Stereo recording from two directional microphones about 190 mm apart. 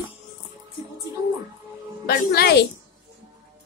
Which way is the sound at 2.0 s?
55° left (ahead or behind).